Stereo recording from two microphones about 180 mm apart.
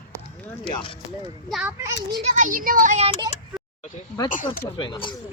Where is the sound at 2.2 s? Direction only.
45° right (ahead or behind).